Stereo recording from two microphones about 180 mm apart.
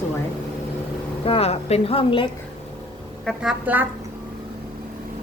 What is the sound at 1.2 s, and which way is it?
A woman's voice, 35° left (ahead or behind).